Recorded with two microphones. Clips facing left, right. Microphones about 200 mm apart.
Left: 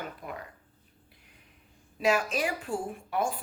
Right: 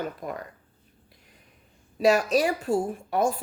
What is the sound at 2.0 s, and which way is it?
A woman's voice, 40° right (ahead or behind).